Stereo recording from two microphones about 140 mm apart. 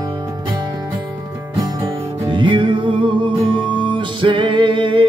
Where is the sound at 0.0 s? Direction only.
30° right (ahead or behind).